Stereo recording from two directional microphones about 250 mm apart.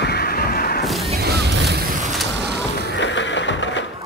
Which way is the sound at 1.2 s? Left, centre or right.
Right.